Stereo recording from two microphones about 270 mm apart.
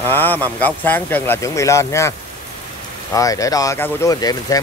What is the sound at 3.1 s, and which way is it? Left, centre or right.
Speech, centre.